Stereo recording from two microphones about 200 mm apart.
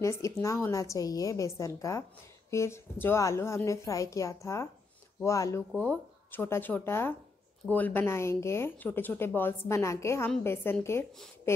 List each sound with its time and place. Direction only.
0.0 s speech: 15° left (ahead or behind)
5.7 s speech: 5° left (ahead or behind)